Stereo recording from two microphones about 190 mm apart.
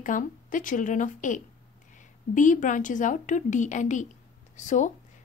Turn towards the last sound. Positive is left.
turn(degrees=40)  # may be behind; listen again after turning